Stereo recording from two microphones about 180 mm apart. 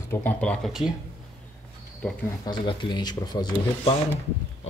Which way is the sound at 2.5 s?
25° left (ahead or behind).